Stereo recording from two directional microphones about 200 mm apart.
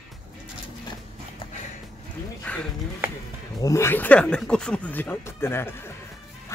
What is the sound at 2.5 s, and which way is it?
Speech, 10° left (ahead or behind).